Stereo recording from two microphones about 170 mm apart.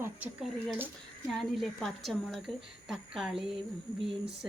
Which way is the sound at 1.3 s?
Centre (ahead or behind).